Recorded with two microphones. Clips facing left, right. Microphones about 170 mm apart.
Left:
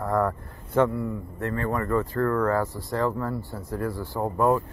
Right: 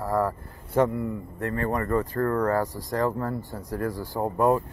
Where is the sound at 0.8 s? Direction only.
20° right (ahead or behind).